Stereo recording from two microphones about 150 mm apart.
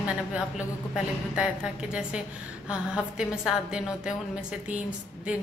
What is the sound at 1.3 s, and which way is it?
A woman's voice, 5° right (ahead or behind).